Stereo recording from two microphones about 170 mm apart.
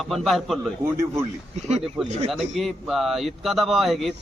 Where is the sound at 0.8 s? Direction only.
15° right (ahead or behind).